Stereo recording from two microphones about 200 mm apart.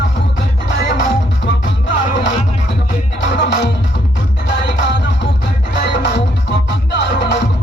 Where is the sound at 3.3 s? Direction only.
60° left (ahead or behind).